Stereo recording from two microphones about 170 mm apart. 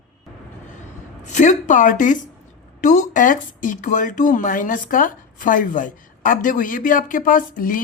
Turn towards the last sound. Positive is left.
turn(degrees=55)  # may be behind; listen again after turning